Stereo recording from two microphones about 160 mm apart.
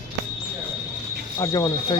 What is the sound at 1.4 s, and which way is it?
Speech, 20° left (ahead or behind).